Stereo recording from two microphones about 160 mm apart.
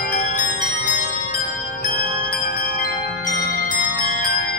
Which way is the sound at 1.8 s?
60° left (ahead or behind).